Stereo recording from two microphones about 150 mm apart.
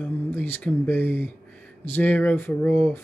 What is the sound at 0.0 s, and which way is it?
Speech, 15° left (ahead or behind).